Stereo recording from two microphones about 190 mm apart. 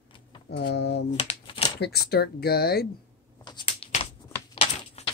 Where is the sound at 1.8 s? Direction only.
55° left (ahead or behind).